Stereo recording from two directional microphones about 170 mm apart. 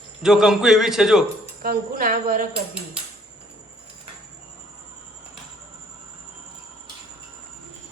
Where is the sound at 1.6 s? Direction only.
60° right (ahead or behind).